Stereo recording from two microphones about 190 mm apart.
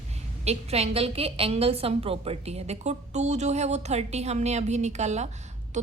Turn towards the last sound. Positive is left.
turn(degrees=-35)  # may be behind; listen again after turning